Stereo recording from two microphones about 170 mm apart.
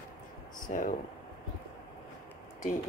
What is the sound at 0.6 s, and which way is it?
Speech, 50° left (ahead or behind).